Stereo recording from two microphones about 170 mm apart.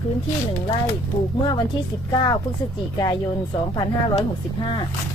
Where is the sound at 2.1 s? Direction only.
25° left (ahead or behind).